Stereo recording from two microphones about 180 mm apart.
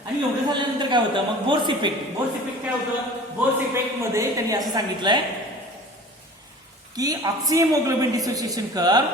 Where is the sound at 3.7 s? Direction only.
15° right (ahead or behind).